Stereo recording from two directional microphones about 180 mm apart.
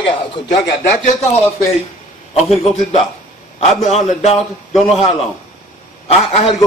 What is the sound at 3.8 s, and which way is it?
Speech, 35° left (ahead or behind).